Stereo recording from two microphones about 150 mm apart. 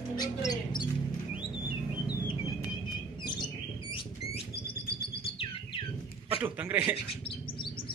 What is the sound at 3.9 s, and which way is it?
Rodents, 40° left (ahead or behind).